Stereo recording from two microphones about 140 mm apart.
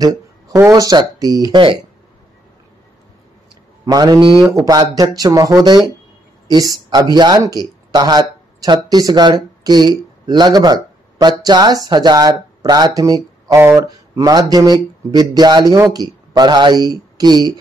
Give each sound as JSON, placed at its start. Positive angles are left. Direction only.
{"t": 0.6, "sound": "speech", "side_deg": -25}
{"t": 1.5, "sound": "speech", "side_deg": -40}
{"t": 3.8, "sound": "speech", "side_deg": -25}